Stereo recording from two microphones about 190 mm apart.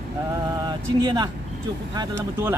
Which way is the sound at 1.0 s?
20° right (ahead or behind).